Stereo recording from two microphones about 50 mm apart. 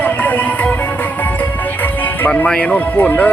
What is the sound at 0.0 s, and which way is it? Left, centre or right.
Music, left.